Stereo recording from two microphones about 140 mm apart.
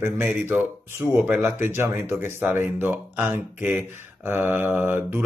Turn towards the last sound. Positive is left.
turn(degrees=-10)  # may be behind; listen again after turning